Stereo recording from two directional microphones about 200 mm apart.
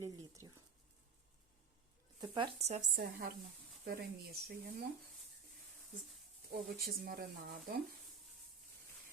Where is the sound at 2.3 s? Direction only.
30° right (ahead or behind).